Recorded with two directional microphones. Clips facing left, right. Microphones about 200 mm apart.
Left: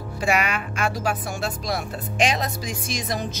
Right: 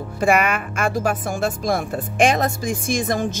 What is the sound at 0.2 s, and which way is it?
Speech, 50° right (ahead or behind).